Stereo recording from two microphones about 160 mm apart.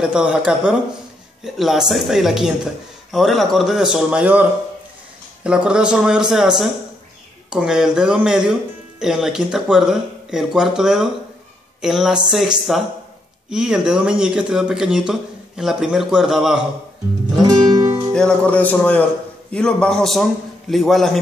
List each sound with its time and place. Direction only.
0.0 s speech: 5° right (ahead or behind)
1.4 s speech: centre (ahead or behind)
17.4 s music: 25° right (ahead or behind)
18.1 s speech: 5° left (ahead or behind)